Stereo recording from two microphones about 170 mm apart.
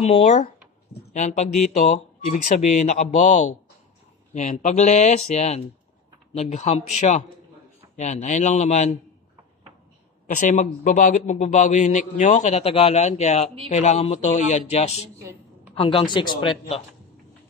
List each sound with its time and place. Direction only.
0.0 s a man's voice: 40° left (ahead or behind)
10.2 s a man's voice: 45° left (ahead or behind)